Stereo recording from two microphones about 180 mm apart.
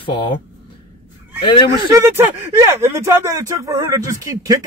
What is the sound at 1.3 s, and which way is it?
Speech, 25° left (ahead or behind).